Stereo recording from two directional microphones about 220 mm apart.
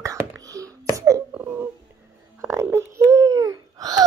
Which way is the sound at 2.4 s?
10° right (ahead or behind).